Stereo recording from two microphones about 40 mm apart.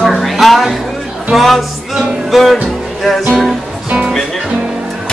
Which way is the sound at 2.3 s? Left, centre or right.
Centre.